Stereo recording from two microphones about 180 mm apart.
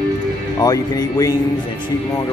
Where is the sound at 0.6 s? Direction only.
20° left (ahead or behind).